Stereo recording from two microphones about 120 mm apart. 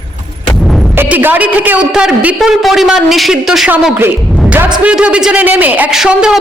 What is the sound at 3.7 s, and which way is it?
A woman's voice, 15° right (ahead or behind).